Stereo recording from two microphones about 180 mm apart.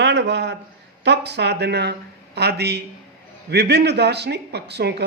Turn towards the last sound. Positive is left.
turn(degrees=-65)  # may be behind; listen again after turning